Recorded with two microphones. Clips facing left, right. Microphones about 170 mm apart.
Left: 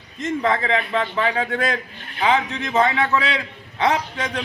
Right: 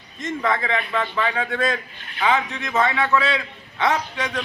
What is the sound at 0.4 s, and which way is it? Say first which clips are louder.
A man's voice: left 2 dB; 30° left (ahead or behind).